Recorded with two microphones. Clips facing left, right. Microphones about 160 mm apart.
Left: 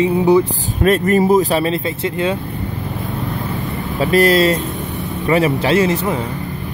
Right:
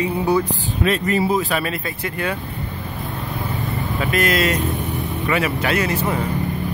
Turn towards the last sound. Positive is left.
turn(degrees=25)  # may be behind; listen again after turning